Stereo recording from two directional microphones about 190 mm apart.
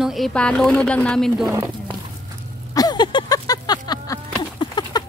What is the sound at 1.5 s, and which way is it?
Speech, 20° right (ahead or behind).